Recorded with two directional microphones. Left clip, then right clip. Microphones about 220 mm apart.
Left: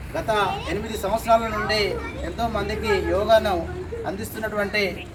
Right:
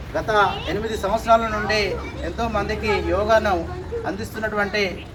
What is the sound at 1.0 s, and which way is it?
A man's voice, 15° left (ahead or behind).